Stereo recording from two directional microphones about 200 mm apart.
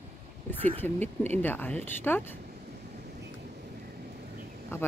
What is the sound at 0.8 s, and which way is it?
Speech, 10° left (ahead or behind).